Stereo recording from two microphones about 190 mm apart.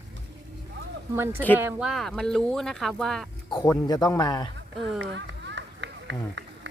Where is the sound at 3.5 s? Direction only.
20° left (ahead or behind).